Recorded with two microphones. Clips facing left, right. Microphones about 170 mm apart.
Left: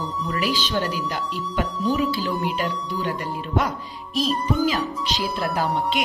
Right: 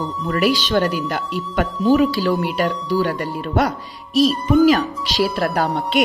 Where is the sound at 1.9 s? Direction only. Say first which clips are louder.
Right 7 dB; 90° right.